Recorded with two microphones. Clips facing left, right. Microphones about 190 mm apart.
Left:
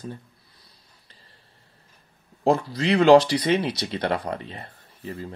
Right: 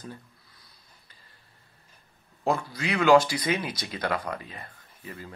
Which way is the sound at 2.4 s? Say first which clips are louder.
Left 6 dB; 35° left (ahead or behind).